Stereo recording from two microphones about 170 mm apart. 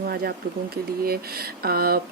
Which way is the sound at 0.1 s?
65° right (ahead or behind).